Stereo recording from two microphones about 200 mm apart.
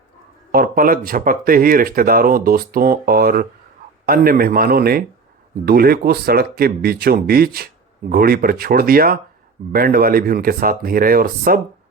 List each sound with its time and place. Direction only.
0.5 s speech: 45° right (ahead or behind)